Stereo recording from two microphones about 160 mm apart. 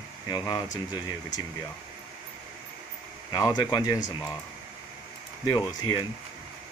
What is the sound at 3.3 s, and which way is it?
Speech, 25° left (ahead or behind).